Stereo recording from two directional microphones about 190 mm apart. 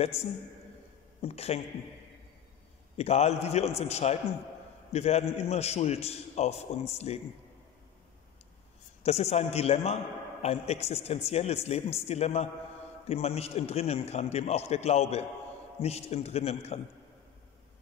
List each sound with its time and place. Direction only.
1.2 s a man's voice: 35° left (ahead or behind)
3.0 s a man's voice: 35° left (ahead or behind)
9.0 s a man's voice: 35° left (ahead or behind)